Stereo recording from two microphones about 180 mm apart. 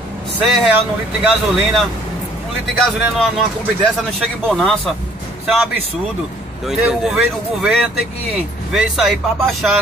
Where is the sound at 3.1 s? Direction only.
Centre (ahead or behind).